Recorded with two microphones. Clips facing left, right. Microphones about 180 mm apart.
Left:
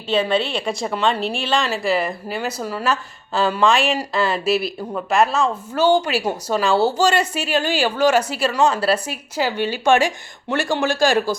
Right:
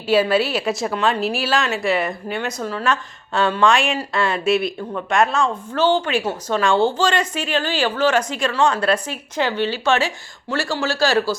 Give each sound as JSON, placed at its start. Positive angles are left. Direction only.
{"t": 0.1, "sound": "speech", "side_deg": -5}
{"t": 11.0, "sound": "speech", "side_deg": 50}